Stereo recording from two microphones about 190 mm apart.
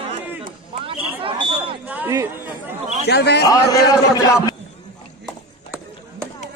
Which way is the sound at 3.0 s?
60° left (ahead or behind).